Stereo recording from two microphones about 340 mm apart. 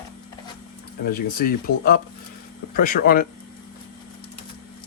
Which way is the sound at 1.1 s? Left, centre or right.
Left.